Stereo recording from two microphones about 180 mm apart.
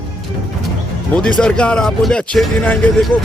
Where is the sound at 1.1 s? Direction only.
5° left (ahead or behind).